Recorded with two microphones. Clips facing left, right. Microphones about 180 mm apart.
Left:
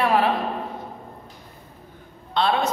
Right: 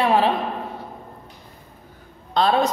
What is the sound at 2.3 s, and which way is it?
Speech, 40° right (ahead or behind).